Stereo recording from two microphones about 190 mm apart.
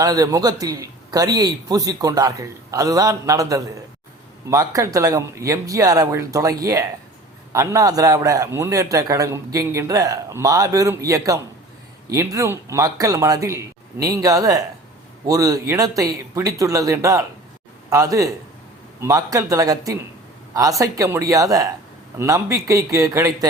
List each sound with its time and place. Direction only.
0.0 s a man's voice: 20° right (ahead or behind)